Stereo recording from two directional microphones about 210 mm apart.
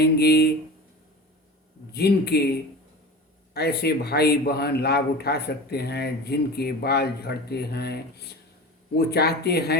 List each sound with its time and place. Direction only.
0.0 s a man's voice: 50° left (ahead or behind)
1.9 s a man's voice: 50° left (ahead or behind)
3.5 s a man's voice: 50° left (ahead or behind)
9.0 s a man's voice: 50° left (ahead or behind)